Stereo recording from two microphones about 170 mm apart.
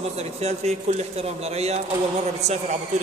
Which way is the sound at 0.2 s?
40° right (ahead or behind).